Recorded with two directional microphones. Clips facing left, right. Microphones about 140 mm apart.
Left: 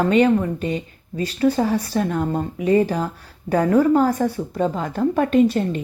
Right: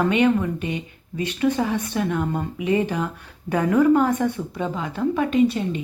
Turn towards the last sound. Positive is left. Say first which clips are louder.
# left 3 dB
turn(degrees=45)  # may be behind; listen again after turning